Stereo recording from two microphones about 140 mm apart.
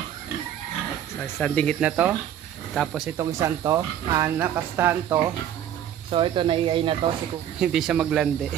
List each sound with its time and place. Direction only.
1.4 s speech: 10° left (ahead or behind)
1.8 s speech: 10° right (ahead or behind)
2.7 s speech: centre (ahead or behind)
3.2 s speech: 20° right (ahead or behind)
6.0 s speech: 40° right (ahead or behind)
7.6 s speech: 5° right (ahead or behind)